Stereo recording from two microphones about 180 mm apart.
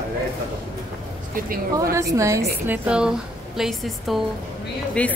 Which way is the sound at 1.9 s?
15° right (ahead or behind).